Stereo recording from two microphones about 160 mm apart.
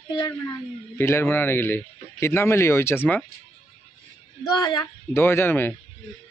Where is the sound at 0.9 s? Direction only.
15° left (ahead or behind).